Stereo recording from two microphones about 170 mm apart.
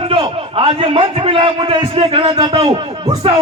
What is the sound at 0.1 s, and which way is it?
A man's voice, 30° right (ahead or behind).